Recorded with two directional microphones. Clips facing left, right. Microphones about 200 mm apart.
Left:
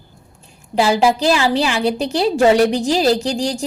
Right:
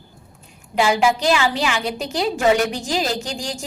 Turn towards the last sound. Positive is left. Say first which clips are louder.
# left 8 dB
turn(degrees=35)  # may be behind; listen again after turning